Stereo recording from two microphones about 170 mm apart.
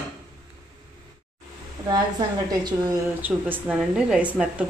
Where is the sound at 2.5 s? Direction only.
20° right (ahead or behind).